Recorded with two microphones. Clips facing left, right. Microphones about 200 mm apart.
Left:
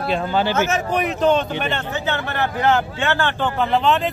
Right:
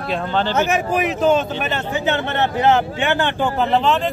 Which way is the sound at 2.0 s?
20° right (ahead or behind).